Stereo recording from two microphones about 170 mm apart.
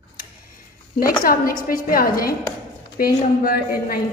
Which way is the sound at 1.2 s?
55° left (ahead or behind).